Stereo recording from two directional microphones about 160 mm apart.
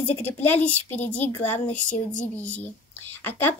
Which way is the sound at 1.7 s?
50° left (ahead or behind).